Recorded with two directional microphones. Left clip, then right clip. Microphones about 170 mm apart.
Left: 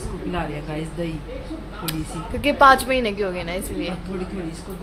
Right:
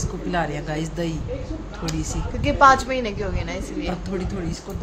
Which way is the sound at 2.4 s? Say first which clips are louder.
Left 1 dB; 25° left (ahead or behind).